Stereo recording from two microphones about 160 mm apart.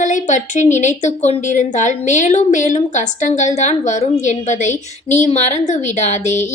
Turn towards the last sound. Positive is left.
turn(degrees=50)  # may be behind; listen again after turning